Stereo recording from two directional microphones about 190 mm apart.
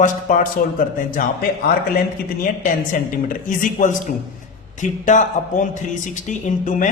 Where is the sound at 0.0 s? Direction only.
45° left (ahead or behind).